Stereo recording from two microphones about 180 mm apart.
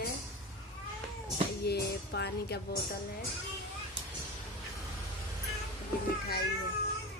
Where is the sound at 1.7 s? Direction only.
65° left (ahead or behind).